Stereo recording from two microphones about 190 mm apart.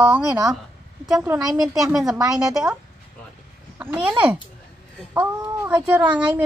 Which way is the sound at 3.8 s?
10° right (ahead or behind).